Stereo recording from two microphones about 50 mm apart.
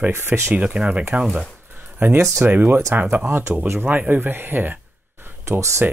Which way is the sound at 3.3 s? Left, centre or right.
Right.